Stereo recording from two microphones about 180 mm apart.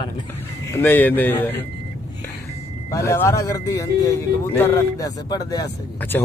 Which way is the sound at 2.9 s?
15° left (ahead or behind).